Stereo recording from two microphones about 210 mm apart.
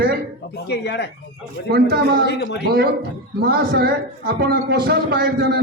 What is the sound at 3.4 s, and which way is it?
A man's voice, 50° right (ahead or behind).